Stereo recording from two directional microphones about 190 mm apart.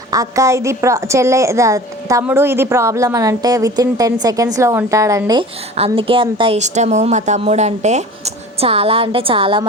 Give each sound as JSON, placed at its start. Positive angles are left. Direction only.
{"t": 0.1, "sound": "a woman's voice", "side_deg": -15}